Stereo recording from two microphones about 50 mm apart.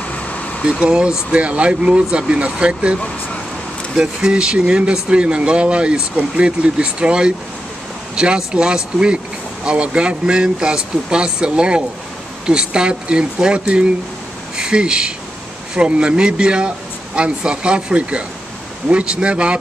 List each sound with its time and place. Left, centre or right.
0.1 s air conditioning: left
0.7 s speech: centre